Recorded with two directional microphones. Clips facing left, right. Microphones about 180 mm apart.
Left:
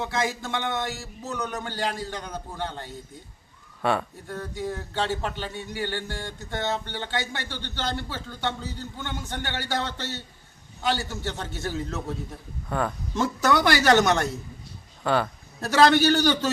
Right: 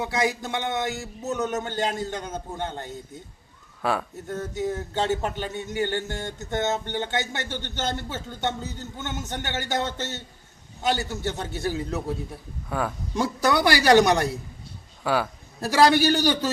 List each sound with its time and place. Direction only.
0.0 s a man's voice: 15° right (ahead or behind)
3.8 s speech: centre (ahead or behind)
4.3 s a man's voice: 20° right (ahead or behind)